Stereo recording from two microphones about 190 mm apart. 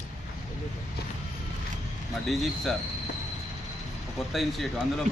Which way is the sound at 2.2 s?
Centre (ahead or behind).